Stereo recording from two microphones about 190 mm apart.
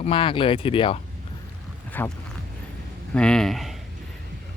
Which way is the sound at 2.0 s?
10° left (ahead or behind).